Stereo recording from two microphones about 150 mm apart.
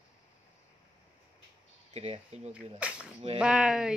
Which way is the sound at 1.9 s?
45° right (ahead or behind).